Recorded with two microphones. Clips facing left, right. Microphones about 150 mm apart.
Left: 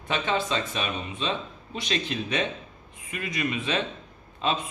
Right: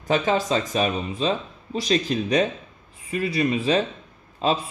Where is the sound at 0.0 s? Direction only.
40° right (ahead or behind).